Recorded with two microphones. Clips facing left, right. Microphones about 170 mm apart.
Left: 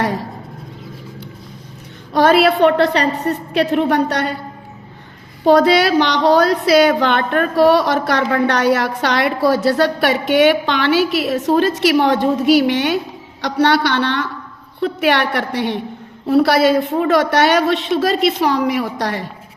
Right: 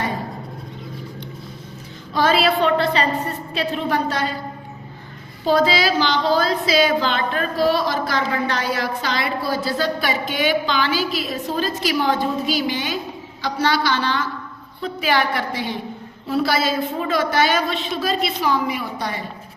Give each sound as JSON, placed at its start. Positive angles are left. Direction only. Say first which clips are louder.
{"t": 0.0, "sound": "a sound", "louder": "left 5 dB", "side_deg": 85}
{"t": 2.1, "sound": "a woman's voice", "louder": "left 6 dB", "side_deg": 65}
{"t": 5.5, "sound": "a woman's voice", "louder": "left 6 dB", "side_deg": 65}